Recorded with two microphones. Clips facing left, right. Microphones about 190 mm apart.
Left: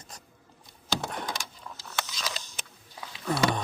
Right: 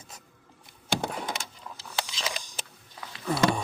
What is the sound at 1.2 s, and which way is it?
Vehicle, 25° right (ahead or behind).